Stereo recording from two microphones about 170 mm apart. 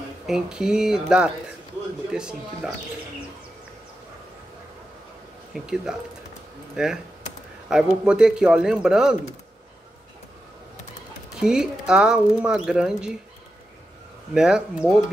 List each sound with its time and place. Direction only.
0.3 s speech: 5° right (ahead or behind)
5.5 s speech: 5° right (ahead or behind)
11.3 s speech: 5° right (ahead or behind)
14.3 s speech: 5° right (ahead or behind)